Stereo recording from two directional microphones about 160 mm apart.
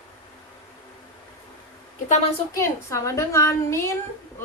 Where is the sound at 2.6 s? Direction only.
20° left (ahead or behind).